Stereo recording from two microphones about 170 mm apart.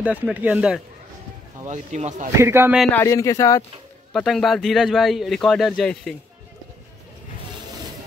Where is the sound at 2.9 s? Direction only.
15° left (ahead or behind).